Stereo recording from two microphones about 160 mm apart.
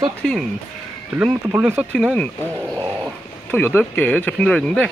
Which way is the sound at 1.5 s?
15° right (ahead or behind).